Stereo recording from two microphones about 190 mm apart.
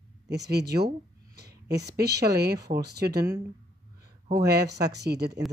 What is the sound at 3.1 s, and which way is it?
Speech, 20° right (ahead or behind).